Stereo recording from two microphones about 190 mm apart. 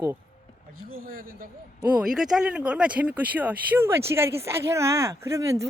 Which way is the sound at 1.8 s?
5° right (ahead or behind).